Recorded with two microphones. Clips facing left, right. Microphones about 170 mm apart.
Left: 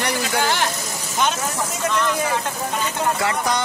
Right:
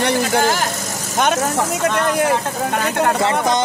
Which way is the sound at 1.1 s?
55° right (ahead or behind).